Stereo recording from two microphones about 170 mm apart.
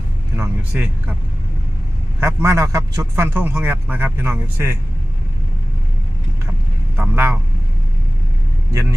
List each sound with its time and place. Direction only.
0.3 s a man's voice: 10° right (ahead or behind)
2.2 s a man's voice: 15° right (ahead or behind)
6.9 s a man's voice: 10° right (ahead or behind)
8.7 s speech: 15° right (ahead or behind)